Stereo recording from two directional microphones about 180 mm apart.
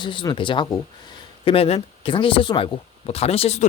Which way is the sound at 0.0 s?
25° left (ahead or behind).